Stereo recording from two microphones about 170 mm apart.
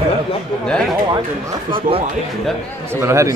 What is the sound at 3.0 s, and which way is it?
Speech, 15° right (ahead or behind).